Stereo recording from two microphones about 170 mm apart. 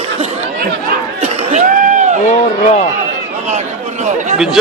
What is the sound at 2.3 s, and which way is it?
Speech, 45° left (ahead or behind).